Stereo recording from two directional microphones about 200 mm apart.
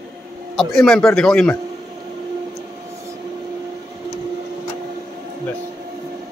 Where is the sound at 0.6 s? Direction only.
Centre (ahead or behind).